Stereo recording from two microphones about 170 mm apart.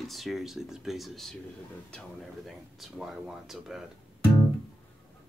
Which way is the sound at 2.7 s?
Centre (ahead or behind).